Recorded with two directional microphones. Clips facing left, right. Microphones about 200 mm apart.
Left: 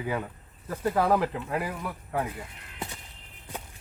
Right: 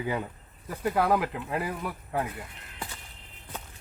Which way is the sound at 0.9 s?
Centre (ahead or behind).